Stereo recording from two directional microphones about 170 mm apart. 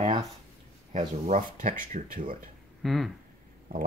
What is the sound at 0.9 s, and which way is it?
Speech, 45° right (ahead or behind).